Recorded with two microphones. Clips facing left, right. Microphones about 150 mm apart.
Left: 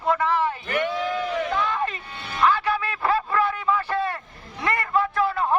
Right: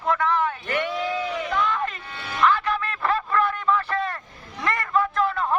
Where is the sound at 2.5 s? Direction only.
5° left (ahead or behind).